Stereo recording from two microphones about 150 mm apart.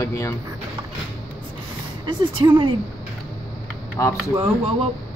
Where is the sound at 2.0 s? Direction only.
35° right (ahead or behind).